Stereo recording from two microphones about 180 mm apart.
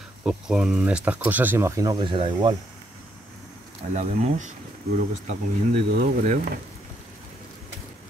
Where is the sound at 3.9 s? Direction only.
40° right (ahead or behind).